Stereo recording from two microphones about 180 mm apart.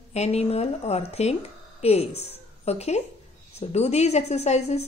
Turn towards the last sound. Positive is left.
turn(degrees=40)  # may be behind; listen again after turning